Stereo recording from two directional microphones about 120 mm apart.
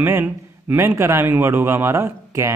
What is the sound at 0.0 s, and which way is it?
A man's voice, 15° right (ahead or behind).